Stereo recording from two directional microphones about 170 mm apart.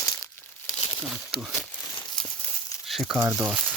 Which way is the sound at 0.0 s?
20° left (ahead or behind).